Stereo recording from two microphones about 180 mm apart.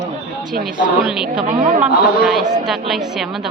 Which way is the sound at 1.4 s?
40° right (ahead or behind).